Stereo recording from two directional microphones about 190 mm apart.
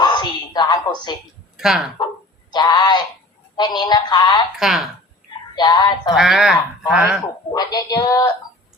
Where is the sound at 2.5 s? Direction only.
20° left (ahead or behind).